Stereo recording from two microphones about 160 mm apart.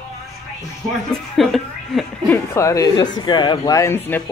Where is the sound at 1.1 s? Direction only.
Centre (ahead or behind).